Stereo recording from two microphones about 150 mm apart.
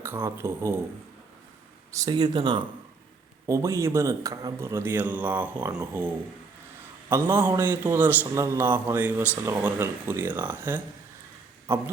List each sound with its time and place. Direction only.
0.0 s a man's voice: 15° right (ahead or behind)
1.9 s speech: 25° right (ahead or behind)
3.4 s a man's voice: 20° right (ahead or behind)